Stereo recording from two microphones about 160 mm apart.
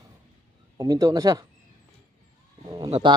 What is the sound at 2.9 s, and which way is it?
Speech, 30° right (ahead or behind).